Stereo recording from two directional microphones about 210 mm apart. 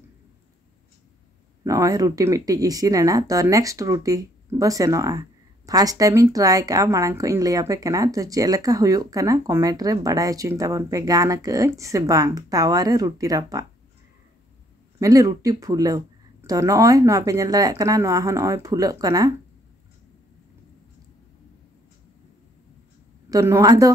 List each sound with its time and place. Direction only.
1.6 s a woman's voice: 15° right (ahead or behind)
15.0 s a woman's voice: 15° right (ahead or behind)
23.3 s a woman's voice: 15° right (ahead or behind)